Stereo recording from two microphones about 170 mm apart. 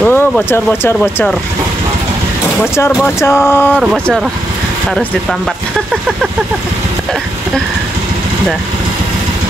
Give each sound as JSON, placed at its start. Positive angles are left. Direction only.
{"t": 0.0, "sound": "speech", "side_deg": 10}
{"t": 2.6, "sound": "a sound", "side_deg": 15}
{"t": 3.8, "sound": "speech", "side_deg": 0}